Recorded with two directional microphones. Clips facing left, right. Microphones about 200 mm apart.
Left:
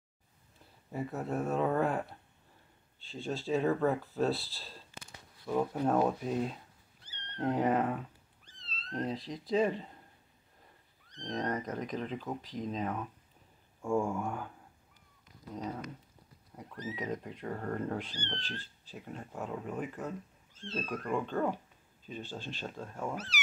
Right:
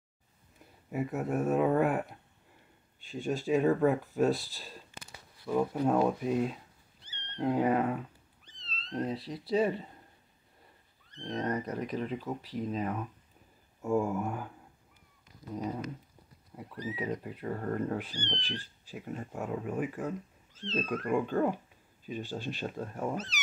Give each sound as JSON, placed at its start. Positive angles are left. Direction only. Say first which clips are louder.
{"t": 0.9, "sound": "speech", "louder": "right 3 dB", "side_deg": -15}
{"t": 5.5, "sound": "speech", "louder": "right 2 dB", "side_deg": 5}
{"t": 6.2, "sound": "cat", "louder": "right 3 dB", "side_deg": -5}
{"t": 8.9, "sound": "speech", "louder": "right 2 dB", "side_deg": -5}
{"t": 11.2, "sound": "speech", "louder": "right 2 dB", "side_deg": 0}
{"t": 14.0, "sound": "speech", "louder": "right 2 dB", "side_deg": -5}
{"t": 15.5, "sound": "speech", "louder": "right 4 dB", "side_deg": -5}
{"t": 23.1, "sound": "speech", "louder": "right 3 dB", "side_deg": 10}